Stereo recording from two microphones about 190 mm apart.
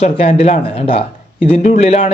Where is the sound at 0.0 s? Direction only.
30° left (ahead or behind).